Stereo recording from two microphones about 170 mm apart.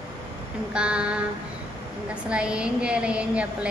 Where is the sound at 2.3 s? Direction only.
5° right (ahead or behind).